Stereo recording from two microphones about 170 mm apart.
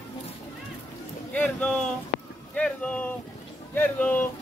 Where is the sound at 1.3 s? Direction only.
10° left (ahead or behind).